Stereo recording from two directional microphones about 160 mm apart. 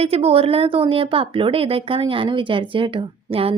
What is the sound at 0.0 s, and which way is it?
A woman's voice, 40° right (ahead or behind).